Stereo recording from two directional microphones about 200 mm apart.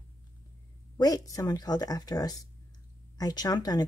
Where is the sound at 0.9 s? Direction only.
15° left (ahead or behind).